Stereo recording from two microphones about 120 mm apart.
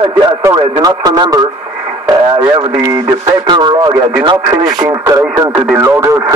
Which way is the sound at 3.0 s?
40° right (ahead or behind).